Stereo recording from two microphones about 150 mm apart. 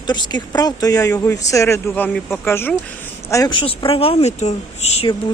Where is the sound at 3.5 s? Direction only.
35° left (ahead or behind).